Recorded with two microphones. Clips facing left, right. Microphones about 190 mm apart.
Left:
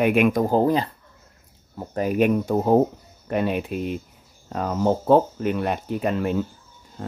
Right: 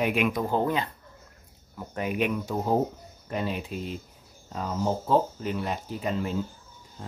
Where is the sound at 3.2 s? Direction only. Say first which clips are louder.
Left 7 dB; 60° left (ahead or behind).